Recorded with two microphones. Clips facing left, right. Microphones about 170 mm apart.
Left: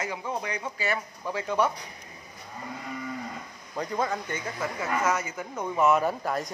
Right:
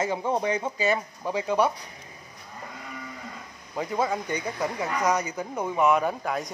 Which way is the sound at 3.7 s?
10° right (ahead or behind).